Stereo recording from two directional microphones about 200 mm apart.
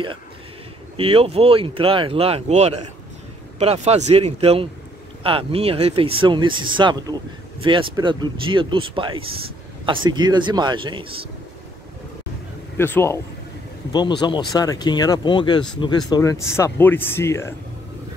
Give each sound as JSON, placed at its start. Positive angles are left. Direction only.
{"t": 0.9, "sound": "speech", "side_deg": -30}
{"t": 12.7, "sound": "speech", "side_deg": 10}
{"t": 13.9, "sound": "speech", "side_deg": 20}